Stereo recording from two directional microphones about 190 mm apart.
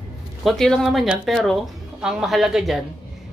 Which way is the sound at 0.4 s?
Centre (ahead or behind).